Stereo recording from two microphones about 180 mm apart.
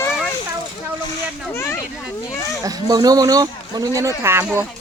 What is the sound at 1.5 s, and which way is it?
Speech, 15° left (ahead or behind).